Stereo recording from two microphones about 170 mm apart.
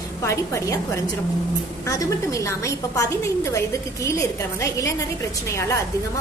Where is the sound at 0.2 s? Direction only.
15° left (ahead or behind).